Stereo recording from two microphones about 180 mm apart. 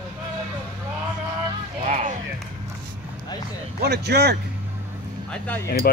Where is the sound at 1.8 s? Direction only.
40° right (ahead or behind).